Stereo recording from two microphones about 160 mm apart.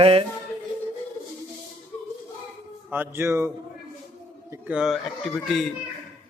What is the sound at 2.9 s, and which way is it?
Speech, 15° right (ahead or behind).